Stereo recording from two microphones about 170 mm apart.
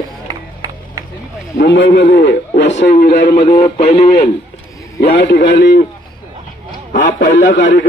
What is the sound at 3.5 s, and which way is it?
Music, 40° left (ahead or behind).